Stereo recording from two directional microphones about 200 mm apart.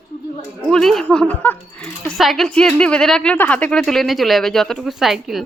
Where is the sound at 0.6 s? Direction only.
Centre (ahead or behind).